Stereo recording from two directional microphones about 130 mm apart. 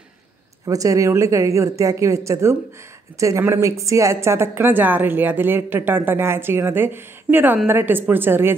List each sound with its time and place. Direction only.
0.7 s a woman's voice: 25° right (ahead or behind)